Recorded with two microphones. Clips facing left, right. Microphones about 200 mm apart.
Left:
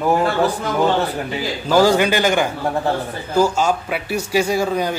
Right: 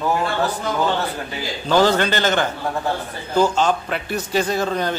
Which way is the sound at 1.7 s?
10° left (ahead or behind).